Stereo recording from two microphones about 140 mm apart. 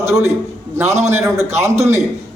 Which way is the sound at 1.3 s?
20° right (ahead or behind).